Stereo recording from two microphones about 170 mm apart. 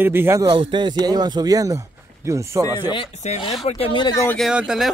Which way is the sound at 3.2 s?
35° left (ahead or behind).